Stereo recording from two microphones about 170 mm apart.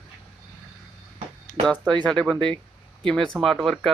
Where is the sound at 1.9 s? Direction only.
5° left (ahead or behind).